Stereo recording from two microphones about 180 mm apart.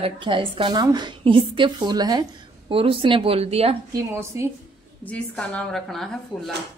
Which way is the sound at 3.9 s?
15° right (ahead or behind).